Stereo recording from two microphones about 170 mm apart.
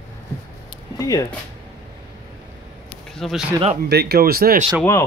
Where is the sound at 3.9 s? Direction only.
70° right (ahead or behind).